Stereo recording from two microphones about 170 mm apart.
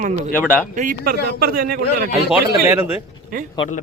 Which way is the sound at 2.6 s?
15° right (ahead or behind).